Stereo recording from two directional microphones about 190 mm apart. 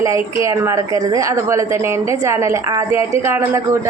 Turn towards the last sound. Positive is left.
turn(degrees=-15)  # may be behind; listen again after turning